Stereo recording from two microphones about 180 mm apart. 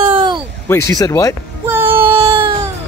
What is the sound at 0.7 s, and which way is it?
Speech, 20° left (ahead or behind).